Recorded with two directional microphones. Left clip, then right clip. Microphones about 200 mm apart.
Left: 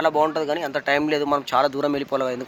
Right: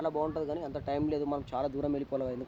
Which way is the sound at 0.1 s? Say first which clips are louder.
Left 12 dB; 55° left (ahead or behind).